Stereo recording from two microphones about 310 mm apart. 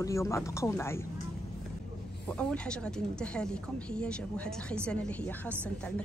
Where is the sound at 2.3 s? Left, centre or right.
Centre.